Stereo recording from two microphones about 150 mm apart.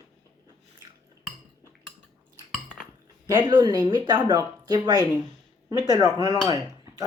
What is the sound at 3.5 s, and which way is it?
Speech, 30° right (ahead or behind).